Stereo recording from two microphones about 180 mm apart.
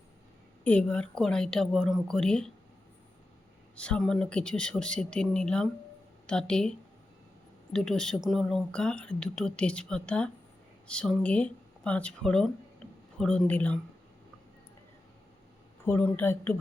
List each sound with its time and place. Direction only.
0.6 s speech: 5° left (ahead or behind)
3.8 s speech: 5° left (ahead or behind)
15.9 s a woman's voice: 10° left (ahead or behind)